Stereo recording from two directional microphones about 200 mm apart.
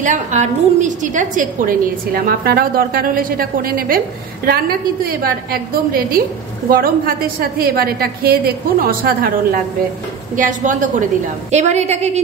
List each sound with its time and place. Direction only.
0.0 s a woman's voice: 40° right (ahead or behind)